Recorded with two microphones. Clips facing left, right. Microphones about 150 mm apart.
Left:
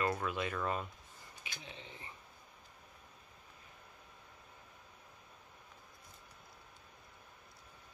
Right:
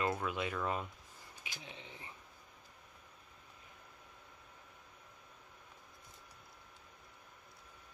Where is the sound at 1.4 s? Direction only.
15° right (ahead or behind).